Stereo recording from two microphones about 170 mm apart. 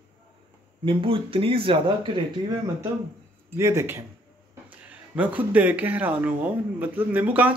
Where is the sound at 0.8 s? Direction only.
30° right (ahead or behind).